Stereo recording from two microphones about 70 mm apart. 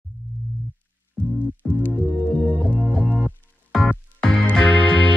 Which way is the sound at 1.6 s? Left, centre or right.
Centre.